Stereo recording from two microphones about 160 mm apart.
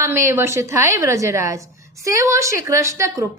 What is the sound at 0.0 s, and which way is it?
A woman's voice, 15° right (ahead or behind).